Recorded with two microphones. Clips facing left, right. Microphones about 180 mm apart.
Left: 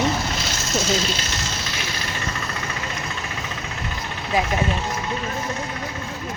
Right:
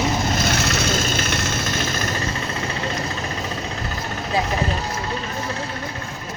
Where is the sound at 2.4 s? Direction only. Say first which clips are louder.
Right 3 dB; 30° right (ahead or behind).